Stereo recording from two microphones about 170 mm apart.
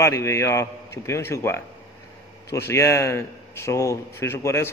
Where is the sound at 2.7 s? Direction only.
15° left (ahead or behind).